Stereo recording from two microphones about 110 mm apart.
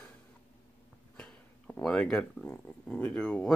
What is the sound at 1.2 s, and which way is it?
Speech, 10° left (ahead or behind).